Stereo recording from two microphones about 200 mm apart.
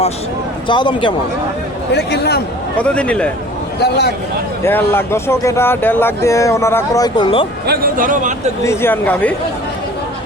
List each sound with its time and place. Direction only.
0.7 s a man's voice: 25° left (ahead or behind)
1.9 s a man's voice: 55° left (ahead or behind)
2.8 s a man's voice: 5° left (ahead or behind)
3.8 s a man's voice: 55° left (ahead or behind)
4.6 s speech: 10° left (ahead or behind)
7.7 s speech: 45° right (ahead or behind)
8.6 s speech: 15° left (ahead or behind)